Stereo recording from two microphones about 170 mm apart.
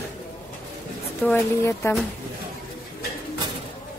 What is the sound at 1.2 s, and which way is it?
Speech, 15° left (ahead or behind).